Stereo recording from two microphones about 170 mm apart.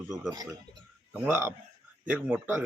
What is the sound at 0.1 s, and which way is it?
Speech, 5° right (ahead or behind).